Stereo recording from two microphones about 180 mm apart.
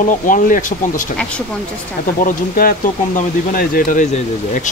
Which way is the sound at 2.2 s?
55° left (ahead or behind).